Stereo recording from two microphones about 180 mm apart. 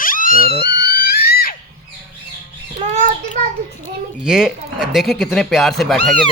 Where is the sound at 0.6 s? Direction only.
60° left (ahead or behind).